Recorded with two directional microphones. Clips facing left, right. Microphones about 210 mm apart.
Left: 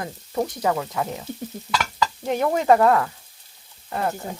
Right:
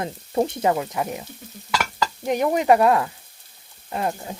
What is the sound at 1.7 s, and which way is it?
Stir, 10° right (ahead or behind).